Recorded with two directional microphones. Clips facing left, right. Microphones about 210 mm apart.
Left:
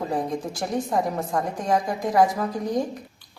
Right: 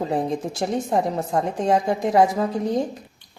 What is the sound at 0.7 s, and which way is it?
A woman's voice, 25° right (ahead or behind).